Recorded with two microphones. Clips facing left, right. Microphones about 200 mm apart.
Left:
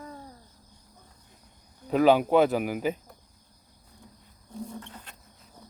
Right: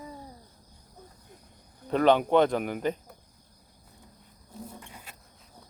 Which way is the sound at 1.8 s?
5° left (ahead or behind).